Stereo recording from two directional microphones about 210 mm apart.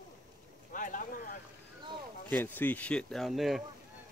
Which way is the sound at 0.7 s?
40° left (ahead or behind).